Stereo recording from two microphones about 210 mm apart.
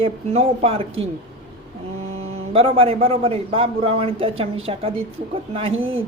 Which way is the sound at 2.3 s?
25° right (ahead or behind).